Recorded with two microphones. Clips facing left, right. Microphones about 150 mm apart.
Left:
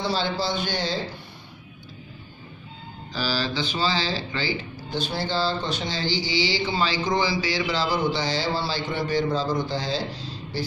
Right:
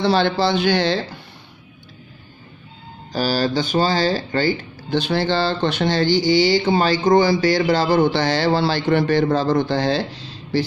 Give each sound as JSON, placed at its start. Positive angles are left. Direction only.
{"t": 0.0, "sound": "speech", "side_deg": -70}
{"t": 3.1, "sound": "speech", "side_deg": -45}
{"t": 4.9, "sound": "speech", "side_deg": -75}